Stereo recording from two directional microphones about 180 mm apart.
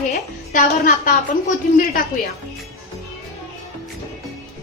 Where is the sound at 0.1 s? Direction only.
50° left (ahead or behind).